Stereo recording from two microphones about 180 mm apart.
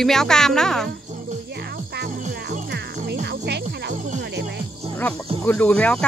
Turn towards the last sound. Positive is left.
turn(degrees=5)  # may be behind; listen again after turning